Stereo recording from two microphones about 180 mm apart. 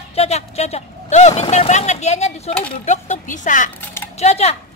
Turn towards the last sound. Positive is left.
turn(degrees=35)  # may be behind; listen again after turning